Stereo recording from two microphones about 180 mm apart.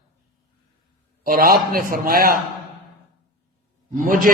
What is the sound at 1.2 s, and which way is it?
A man's voice, 55° right (ahead or behind).